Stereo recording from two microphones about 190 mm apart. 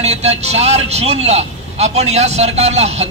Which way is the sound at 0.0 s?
35° right (ahead or behind).